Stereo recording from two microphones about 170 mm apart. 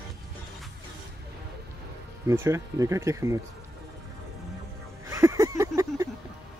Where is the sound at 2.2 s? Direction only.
15° right (ahead or behind).